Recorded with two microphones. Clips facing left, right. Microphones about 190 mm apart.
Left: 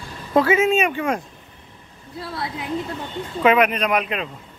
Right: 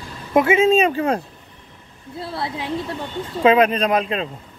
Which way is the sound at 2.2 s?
30° right (ahead or behind).